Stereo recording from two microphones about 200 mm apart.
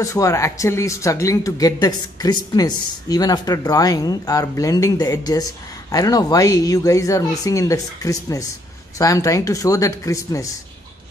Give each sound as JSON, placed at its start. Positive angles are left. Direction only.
{"t": 0.0, "sound": "speech", "side_deg": 15}